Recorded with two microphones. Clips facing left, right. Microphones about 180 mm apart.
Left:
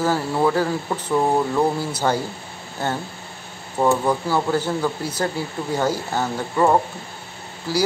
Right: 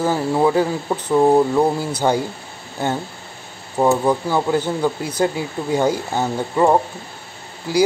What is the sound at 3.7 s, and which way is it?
Speech, 15° right (ahead or behind).